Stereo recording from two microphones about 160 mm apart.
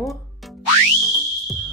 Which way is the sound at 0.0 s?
Centre (ahead or behind).